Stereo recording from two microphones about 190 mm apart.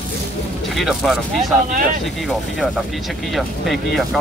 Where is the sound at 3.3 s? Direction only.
Centre (ahead or behind).